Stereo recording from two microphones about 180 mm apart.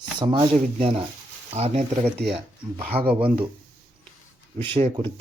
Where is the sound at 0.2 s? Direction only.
25° right (ahead or behind).